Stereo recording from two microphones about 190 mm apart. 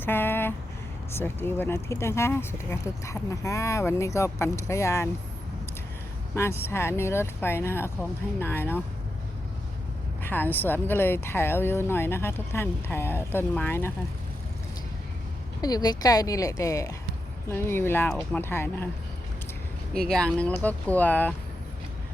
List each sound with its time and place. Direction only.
0.0 s a sound: 10° left (ahead or behind)
1.1 s speech: 10° left (ahead or behind)
6.3 s speech: 15° left (ahead or behind)
10.2 s speech: 10° left (ahead or behind)
15.6 s speech: 20° left (ahead or behind)
20.1 s speech: 5° left (ahead or behind)